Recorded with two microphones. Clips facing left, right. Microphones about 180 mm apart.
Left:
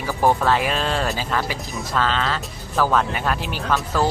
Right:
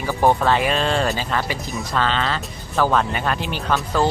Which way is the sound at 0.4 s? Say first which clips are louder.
Right 2 dB; centre (ahead or behind).